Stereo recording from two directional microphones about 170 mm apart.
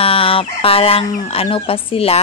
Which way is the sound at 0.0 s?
35° left (ahead or behind).